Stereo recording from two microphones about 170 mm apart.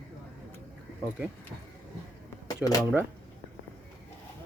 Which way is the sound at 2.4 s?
20° left (ahead or behind).